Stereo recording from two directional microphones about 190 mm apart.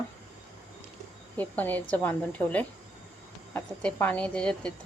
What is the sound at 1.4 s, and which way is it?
A woman's voice, 10° left (ahead or behind).